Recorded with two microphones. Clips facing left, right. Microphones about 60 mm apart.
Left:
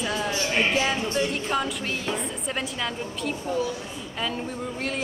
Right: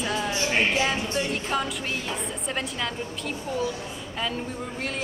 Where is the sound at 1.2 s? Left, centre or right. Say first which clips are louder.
Left 2 dB; centre.